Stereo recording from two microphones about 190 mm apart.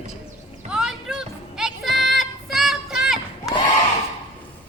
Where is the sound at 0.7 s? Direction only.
5° right (ahead or behind).